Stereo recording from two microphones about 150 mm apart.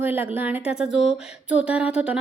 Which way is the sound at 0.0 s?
10° right (ahead or behind).